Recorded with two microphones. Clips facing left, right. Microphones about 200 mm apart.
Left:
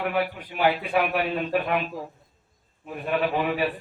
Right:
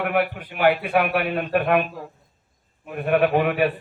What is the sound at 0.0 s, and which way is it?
A man's voice, 60° right (ahead or behind).